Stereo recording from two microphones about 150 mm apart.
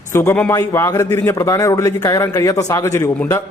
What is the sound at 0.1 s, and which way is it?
A man's voice, 15° left (ahead or behind).